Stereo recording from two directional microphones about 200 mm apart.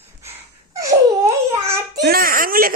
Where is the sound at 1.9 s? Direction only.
50° right (ahead or behind).